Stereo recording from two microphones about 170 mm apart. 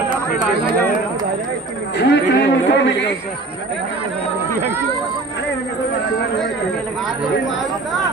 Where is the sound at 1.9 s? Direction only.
85° left.